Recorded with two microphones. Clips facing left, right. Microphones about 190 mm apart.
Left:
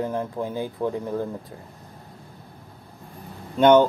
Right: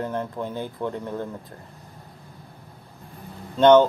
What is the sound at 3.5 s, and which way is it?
Speech, 10° left (ahead or behind).